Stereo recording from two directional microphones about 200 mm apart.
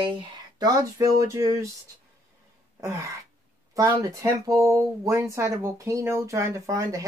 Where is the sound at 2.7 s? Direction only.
15° right (ahead or behind).